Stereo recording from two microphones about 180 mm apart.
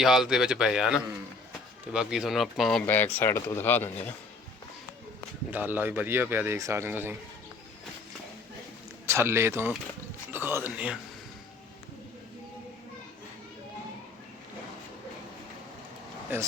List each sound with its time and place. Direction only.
0.0 s a man's voice: centre (ahead or behind)
2.8 s speech: 10° left (ahead or behind)
5.5 s speech: 10° right (ahead or behind)
9.0 s speech: 15° right (ahead or behind)